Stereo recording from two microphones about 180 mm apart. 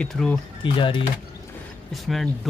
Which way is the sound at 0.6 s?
30° left (ahead or behind).